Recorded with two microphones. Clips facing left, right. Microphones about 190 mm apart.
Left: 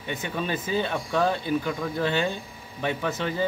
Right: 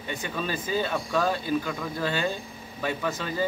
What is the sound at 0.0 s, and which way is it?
Speech, 20° left (ahead or behind).